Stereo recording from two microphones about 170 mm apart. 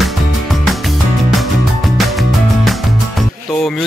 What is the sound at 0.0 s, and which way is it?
Music, centre (ahead or behind).